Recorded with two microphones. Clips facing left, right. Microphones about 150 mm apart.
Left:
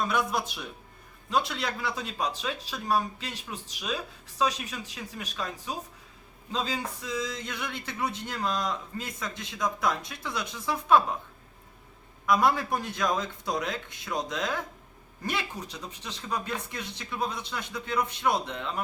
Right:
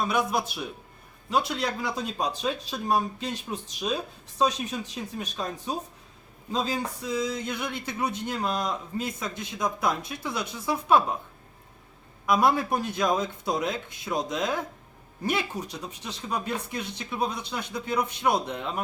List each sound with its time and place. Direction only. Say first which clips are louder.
0.1 s speech: right 2 dB; 10° right (ahead or behind)
1.6 s speech: right 3 dB; 20° right (ahead or behind)
6.5 s speech: right 3 dB; 10° right (ahead or behind)
12.2 s speech: right 2 dB; 10° right (ahead or behind)